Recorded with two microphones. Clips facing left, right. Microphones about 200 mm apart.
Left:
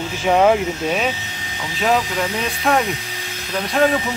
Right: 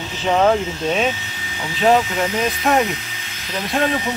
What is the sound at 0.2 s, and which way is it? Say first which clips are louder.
Speech: left 1 dB; 10° left (ahead or behind).